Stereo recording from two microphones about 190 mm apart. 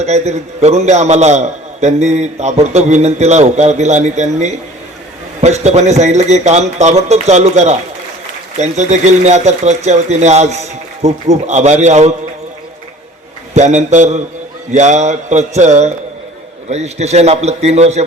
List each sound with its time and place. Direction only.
0.0 s a man's voice: 35° right (ahead or behind)
13.5 s a man's voice: 35° right (ahead or behind)